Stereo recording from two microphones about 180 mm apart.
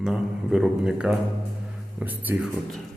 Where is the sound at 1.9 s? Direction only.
10° right (ahead or behind).